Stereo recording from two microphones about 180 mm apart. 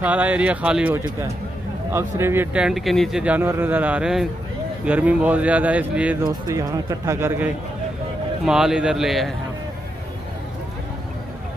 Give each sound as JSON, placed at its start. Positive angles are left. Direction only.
{"t": 0.0, "sound": "speech", "side_deg": -10}
{"t": 6.2, "sound": "speech", "side_deg": -20}
{"t": 8.5, "sound": "speech", "side_deg": -5}